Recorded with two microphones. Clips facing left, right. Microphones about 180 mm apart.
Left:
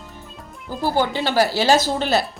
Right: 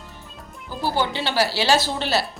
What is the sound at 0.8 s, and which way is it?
A woman's voice, 45° left (ahead or behind).